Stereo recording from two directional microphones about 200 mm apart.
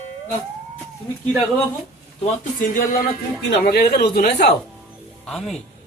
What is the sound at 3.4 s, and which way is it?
Speech, 50° left (ahead or behind).